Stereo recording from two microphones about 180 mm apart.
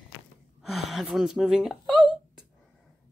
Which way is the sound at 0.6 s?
Centre (ahead or behind).